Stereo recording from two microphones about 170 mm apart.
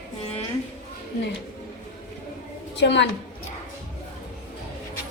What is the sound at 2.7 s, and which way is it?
Speech, 90° left.